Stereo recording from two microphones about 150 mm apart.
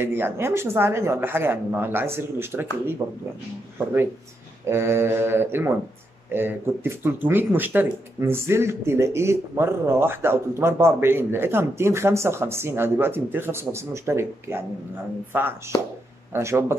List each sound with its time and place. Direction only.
0.0 s speech: 15° right (ahead or behind)
4.6 s speech: 15° right (ahead or behind)